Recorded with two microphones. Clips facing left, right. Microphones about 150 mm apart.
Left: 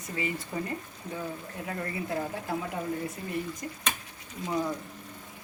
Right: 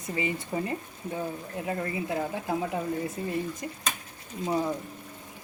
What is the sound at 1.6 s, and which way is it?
Speech, 20° right (ahead or behind).